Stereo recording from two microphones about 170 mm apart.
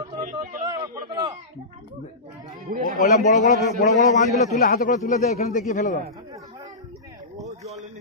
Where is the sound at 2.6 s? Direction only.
55° right (ahead or behind).